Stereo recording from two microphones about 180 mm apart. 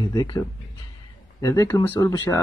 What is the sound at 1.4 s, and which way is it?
Speech, 20° left (ahead or behind).